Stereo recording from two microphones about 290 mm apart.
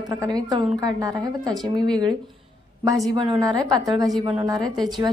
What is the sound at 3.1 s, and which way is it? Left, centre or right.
A woman's voice, centre.